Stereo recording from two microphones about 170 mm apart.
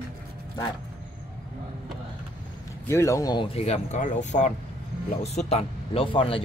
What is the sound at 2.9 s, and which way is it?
Speech, 15° left (ahead or behind).